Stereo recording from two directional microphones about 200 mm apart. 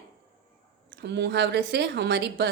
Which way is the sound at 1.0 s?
60° right (ahead or behind).